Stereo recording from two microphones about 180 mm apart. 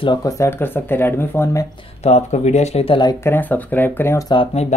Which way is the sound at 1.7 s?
35° left (ahead or behind).